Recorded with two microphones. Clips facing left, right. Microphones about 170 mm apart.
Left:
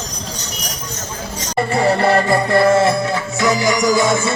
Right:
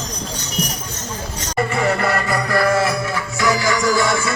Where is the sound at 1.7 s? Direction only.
30° left (ahead or behind).